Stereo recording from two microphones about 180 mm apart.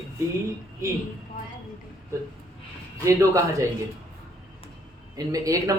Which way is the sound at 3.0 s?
15° right (ahead or behind).